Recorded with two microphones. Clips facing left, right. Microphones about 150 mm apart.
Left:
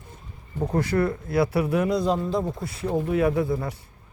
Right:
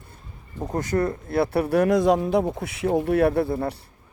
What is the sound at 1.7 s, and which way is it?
Speech, 80° right.